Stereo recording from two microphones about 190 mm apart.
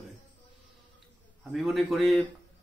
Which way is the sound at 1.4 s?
Centre (ahead or behind).